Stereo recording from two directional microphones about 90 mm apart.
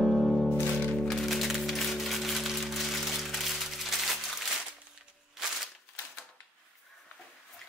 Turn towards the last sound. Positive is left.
turn(degrees=-5)  # may be behind; listen again after turning